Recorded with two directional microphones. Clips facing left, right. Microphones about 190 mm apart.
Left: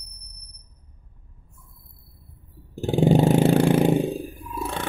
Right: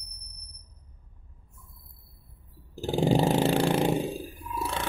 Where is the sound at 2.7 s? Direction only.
55° left (ahead or behind).